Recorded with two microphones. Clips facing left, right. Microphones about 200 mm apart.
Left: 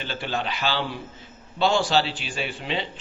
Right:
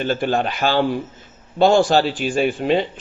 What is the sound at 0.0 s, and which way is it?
A man's voice, 50° right (ahead or behind).